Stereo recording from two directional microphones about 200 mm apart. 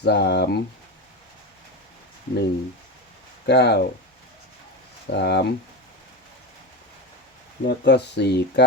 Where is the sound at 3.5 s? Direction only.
55° left (ahead or behind).